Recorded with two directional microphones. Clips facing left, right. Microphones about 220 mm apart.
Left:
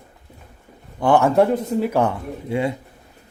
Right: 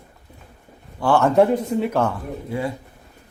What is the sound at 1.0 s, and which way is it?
Speech, 20° left (ahead or behind).